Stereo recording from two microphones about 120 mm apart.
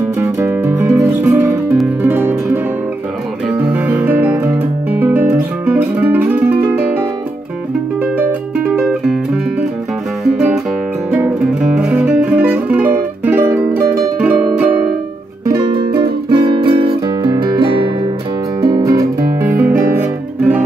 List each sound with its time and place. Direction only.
0.2 s music: 25° right (ahead or behind)
8.2 s music: 10° right (ahead or behind)
15.4 s music: 35° right (ahead or behind)
18.6 s music: 30° right (ahead or behind)
19.4 s music: 15° right (ahead or behind)